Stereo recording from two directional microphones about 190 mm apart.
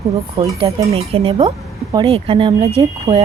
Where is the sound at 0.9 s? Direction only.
30° right (ahead or behind).